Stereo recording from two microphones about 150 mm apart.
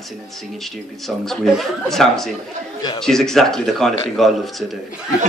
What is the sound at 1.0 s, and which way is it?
A man's voice, centre (ahead or behind).